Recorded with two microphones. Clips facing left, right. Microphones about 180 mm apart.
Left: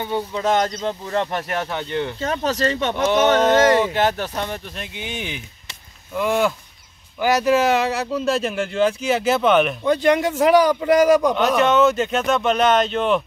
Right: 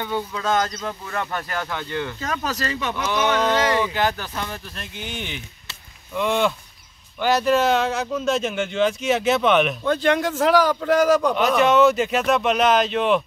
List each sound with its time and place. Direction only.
0.0 s speech: 25° left (ahead or behind)
3.1 s speech: 45° left (ahead or behind)
4.4 s speech: 25° left (ahead or behind)
4.9 s a man's voice: 10° left (ahead or behind)
9.8 s a man's voice: 15° left (ahead or behind)
11.3 s speech: centre (ahead or behind)